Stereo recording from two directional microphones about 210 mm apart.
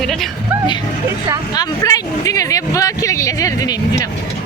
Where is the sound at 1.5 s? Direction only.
20° left (ahead or behind).